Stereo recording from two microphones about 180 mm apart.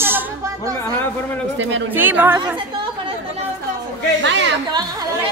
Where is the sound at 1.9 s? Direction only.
10° right (ahead or behind).